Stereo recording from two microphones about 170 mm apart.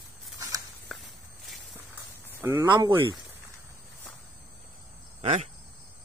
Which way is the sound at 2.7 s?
25° right (ahead or behind).